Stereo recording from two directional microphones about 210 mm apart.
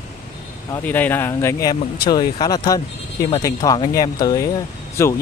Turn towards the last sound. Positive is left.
turn(degrees=15)  # may be behind; listen again after turning